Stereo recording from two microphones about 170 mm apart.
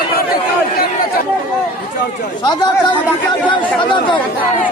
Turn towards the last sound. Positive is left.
turn(degrees=30)  # may be behind; listen again after turning